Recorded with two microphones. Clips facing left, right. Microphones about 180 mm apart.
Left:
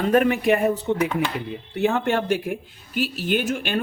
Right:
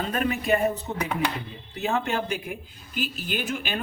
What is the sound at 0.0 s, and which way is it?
Speech, 60° left (ahead or behind).